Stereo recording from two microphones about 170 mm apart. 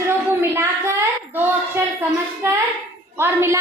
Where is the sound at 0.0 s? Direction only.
15° right (ahead or behind).